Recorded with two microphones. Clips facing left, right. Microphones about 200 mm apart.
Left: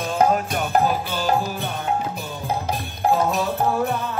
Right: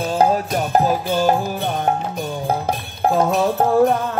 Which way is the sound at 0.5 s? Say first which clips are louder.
Right 3 dB; 45° right (ahead or behind).